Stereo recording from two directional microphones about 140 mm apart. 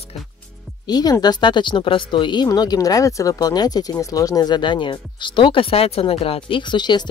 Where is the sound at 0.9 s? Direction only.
25° left (ahead or behind).